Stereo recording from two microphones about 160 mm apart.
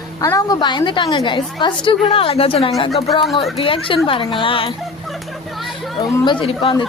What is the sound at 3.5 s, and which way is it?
Speech, 35° left (ahead or behind).